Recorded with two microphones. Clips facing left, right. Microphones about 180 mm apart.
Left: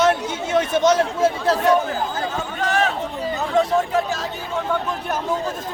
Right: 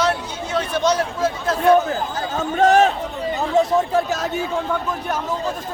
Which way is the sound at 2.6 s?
40° right (ahead or behind).